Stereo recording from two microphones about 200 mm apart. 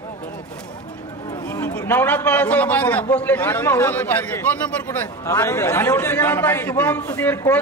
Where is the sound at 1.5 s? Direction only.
10° left (ahead or behind).